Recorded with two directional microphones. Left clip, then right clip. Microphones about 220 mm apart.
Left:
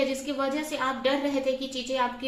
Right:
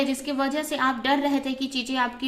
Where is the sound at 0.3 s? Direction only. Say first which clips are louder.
Right 3 dB; 45° right (ahead or behind).